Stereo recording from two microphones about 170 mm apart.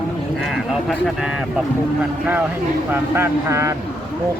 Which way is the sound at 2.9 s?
15° right (ahead or behind).